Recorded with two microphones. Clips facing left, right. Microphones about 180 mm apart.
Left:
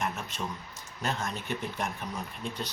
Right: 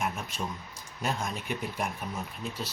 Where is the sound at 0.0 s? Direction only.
10° right (ahead or behind).